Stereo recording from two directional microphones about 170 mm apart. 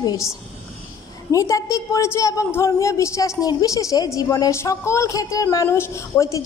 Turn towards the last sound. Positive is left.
turn(degrees=15)  # may be behind; listen again after turning